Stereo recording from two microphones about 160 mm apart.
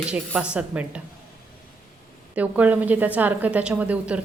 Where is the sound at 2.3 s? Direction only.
10° right (ahead or behind).